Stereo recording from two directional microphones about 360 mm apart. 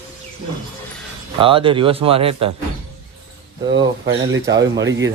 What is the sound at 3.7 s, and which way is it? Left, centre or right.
Speech, right.